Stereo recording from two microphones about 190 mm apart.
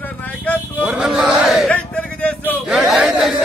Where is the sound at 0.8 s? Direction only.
5° right (ahead or behind).